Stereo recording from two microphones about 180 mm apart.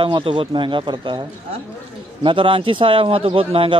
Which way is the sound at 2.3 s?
30° right (ahead or behind).